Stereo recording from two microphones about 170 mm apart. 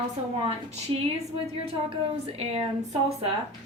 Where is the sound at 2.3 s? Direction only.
35° right (ahead or behind).